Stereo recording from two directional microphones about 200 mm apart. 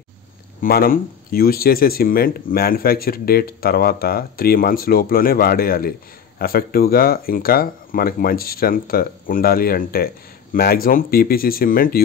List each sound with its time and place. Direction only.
0.6 s speech: 45° left (ahead or behind)